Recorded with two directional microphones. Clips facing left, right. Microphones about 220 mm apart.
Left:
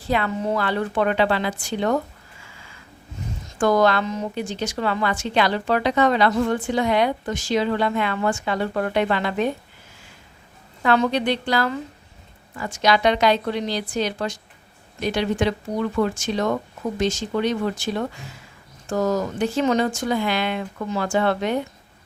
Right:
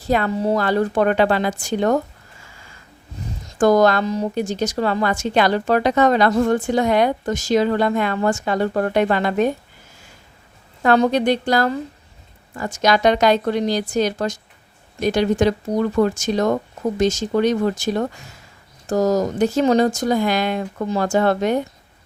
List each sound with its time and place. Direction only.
0.0 s a woman's voice: 40° right (ahead or behind)
3.6 s a woman's voice: 40° right (ahead or behind)
10.8 s a woman's voice: 40° right (ahead or behind)